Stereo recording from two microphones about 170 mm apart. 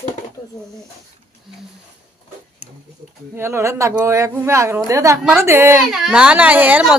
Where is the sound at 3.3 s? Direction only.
15° right (ahead or behind).